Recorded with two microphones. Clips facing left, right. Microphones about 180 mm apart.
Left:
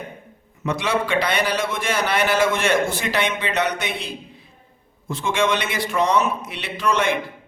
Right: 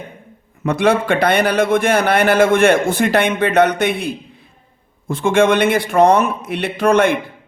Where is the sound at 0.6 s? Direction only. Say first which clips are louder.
Right 7 dB; 55° right (ahead or behind).